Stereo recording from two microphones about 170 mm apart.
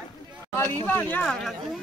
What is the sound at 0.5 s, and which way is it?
Speech, 10° left (ahead or behind).